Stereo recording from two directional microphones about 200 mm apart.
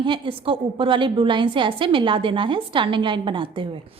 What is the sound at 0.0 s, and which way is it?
A woman's voice, 25° right (ahead or behind).